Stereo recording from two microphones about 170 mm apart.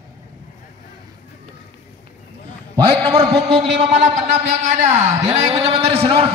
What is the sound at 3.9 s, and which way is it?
A man's voice, 40° right (ahead or behind).